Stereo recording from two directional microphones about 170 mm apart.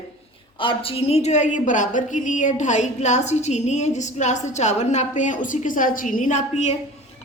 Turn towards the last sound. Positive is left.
turn(degrees=45)  # may be behind; listen again after turning